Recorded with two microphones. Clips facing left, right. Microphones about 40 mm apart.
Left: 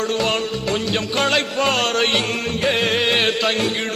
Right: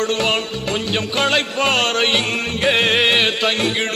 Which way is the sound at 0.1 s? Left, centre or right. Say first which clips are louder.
Right 1 dB; right.